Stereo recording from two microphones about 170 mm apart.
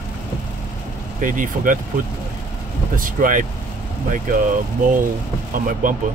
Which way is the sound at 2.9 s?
50° right (ahead or behind).